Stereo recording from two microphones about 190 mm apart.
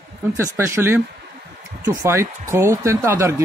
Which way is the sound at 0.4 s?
15° right (ahead or behind).